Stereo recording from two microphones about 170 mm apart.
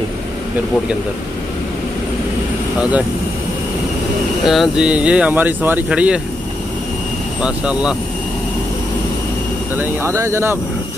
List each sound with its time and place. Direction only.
4.5 s speech: 5° right (ahead or behind)
7.4 s speech: 5° right (ahead or behind)
9.8 s speech: 15° right (ahead or behind)